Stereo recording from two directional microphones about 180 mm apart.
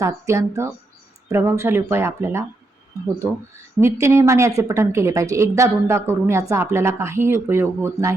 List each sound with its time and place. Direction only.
0.0 s a woman's voice: 15° right (ahead or behind)
3.8 s a woman's voice: 15° right (ahead or behind)